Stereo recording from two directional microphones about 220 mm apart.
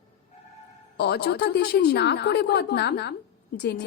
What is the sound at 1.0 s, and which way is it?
A woman's voice, 50° left (ahead or behind).